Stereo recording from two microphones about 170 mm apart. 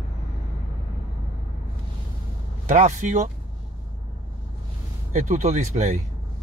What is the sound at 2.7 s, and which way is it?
Speech, 45° right (ahead or behind).